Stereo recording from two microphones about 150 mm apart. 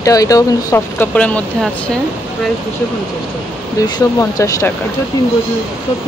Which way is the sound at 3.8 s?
20° left (ahead or behind).